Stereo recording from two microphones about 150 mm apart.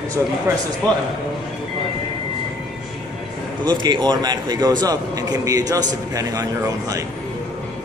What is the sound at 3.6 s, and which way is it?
A man's voice, 30° right (ahead or behind).